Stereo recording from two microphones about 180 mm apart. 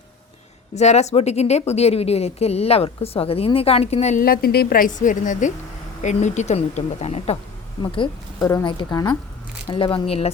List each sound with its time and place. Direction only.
0.7 s speech: 40° left (ahead or behind)
4.2 s a woman's voice: 55° left (ahead or behind); by 7.3 s 35° left (ahead or behind)
7.8 s speech: 25° left (ahead or behind)